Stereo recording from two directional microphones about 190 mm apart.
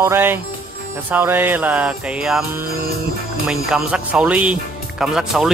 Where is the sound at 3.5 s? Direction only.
5° right (ahead or behind).